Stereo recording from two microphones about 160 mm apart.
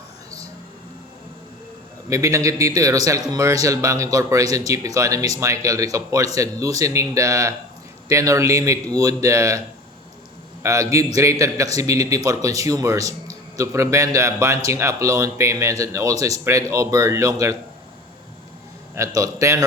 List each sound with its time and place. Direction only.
2.0 s a man's voice: 20° right (ahead or behind)
10.6 s a man's voice: 20° right (ahead or behind)
18.9 s a man's voice: 20° right (ahead or behind)